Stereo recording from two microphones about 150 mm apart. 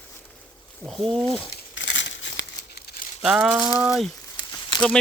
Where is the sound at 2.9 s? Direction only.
90° left.